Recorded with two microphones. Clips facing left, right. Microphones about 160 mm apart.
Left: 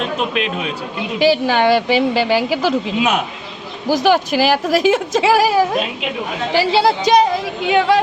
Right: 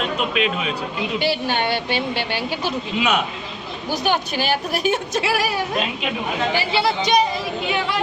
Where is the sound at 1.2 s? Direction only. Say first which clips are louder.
Left 10 dB; 90° left.